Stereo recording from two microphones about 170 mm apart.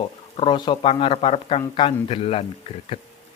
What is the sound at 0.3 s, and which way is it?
Speech, 30° left (ahead or behind).